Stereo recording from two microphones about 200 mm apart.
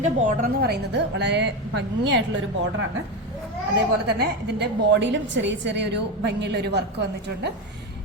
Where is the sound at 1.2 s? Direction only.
60° right (ahead or behind).